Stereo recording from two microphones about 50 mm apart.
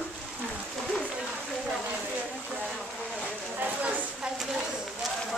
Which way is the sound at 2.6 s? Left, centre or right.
Centre.